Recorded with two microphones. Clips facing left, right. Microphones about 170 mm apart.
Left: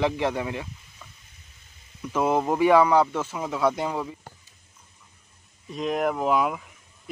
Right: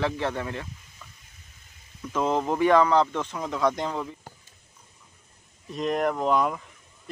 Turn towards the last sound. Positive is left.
turn(degrees=5)  # may be behind; listen again after turning